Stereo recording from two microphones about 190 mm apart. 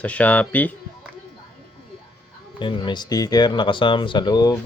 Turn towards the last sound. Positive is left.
turn(degrees=20)  # may be behind; listen again after turning